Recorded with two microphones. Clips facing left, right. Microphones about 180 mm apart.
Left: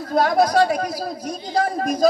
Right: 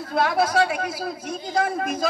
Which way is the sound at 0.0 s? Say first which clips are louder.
Left 4 dB; 40° left (ahead or behind).